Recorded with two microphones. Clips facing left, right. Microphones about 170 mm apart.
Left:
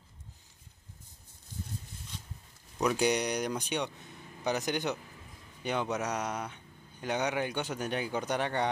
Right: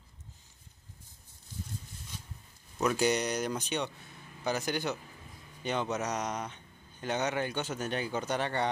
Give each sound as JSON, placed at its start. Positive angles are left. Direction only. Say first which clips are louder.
{"t": 2.8, "sound": "speech", "louder": "even", "side_deg": 15}